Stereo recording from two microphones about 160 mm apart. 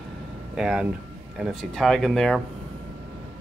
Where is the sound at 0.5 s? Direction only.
5° right (ahead or behind).